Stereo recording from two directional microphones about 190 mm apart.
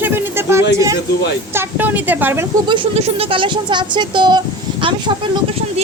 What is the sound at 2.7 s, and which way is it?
Speech, 30° right (ahead or behind).